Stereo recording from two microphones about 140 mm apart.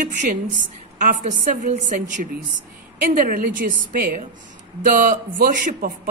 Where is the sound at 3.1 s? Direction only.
80° right.